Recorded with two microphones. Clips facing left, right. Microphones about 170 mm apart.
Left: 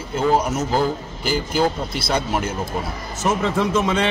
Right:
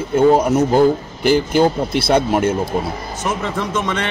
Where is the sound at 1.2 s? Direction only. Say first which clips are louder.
Right 6 dB; 60° right (ahead or behind).